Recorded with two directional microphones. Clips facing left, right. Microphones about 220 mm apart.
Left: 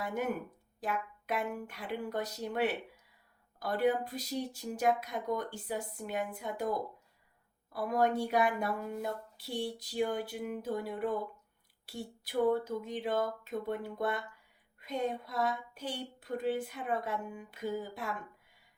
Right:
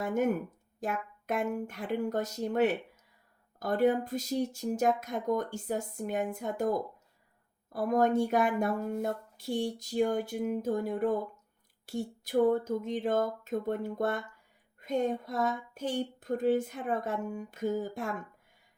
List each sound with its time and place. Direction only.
0.0 s speech: 45° right (ahead or behind)